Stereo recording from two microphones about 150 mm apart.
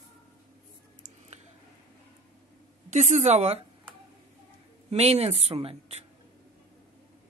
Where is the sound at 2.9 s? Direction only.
50° right (ahead or behind).